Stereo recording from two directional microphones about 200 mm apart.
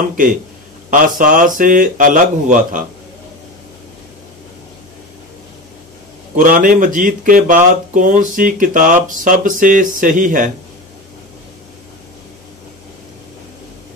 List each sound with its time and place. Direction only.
0.8 s speech: 40° right (ahead or behind)
6.3 s speech: 40° right (ahead or behind)